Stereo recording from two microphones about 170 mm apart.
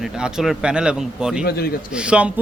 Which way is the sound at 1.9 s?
5° right (ahead or behind).